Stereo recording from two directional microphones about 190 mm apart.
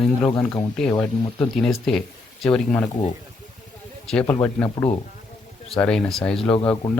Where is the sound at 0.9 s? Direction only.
25° left (ahead or behind).